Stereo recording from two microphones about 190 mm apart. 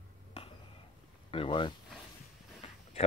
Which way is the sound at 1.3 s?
25° left (ahead or behind).